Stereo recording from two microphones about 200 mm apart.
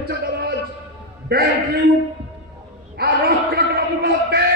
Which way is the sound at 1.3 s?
55° right (ahead or behind).